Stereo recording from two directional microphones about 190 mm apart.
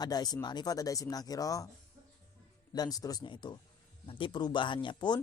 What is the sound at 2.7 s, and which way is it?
Speech, 20° left (ahead or behind).